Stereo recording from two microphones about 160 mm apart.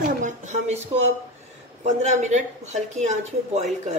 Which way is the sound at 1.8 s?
45° right (ahead or behind).